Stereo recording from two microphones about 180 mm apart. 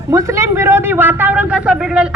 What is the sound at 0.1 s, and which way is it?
A man's voice, 15° right (ahead or behind).